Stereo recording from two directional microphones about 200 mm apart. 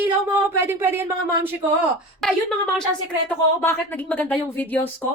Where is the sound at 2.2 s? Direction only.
Centre (ahead or behind).